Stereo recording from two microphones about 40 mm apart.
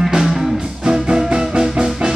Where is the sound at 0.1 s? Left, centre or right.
Centre.